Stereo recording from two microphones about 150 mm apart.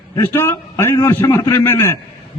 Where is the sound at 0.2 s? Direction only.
20° left (ahead or behind).